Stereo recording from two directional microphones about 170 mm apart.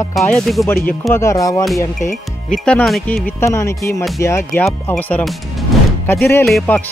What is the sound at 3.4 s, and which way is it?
Speech, 15° left (ahead or behind).